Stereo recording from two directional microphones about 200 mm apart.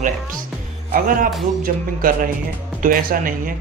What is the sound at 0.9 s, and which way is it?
A woman's voice, 45° right (ahead or behind).